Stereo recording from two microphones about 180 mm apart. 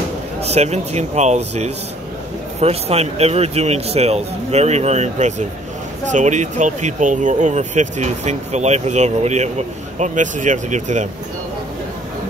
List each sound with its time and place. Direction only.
0.4 s speech: 35° right (ahead or behind)